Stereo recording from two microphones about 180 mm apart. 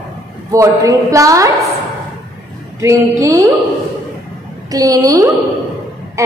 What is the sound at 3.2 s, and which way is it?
Speech, 20° right (ahead or behind).